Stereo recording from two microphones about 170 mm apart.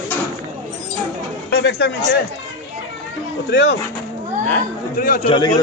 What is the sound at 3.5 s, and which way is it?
Speech, 90° left.